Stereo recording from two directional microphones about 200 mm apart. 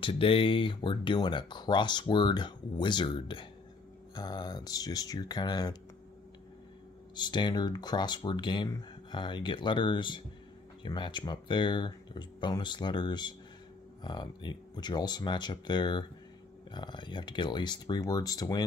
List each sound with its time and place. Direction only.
0.0 s speech: 25° left (ahead or behind)
7.2 s speech: 20° left (ahead or behind)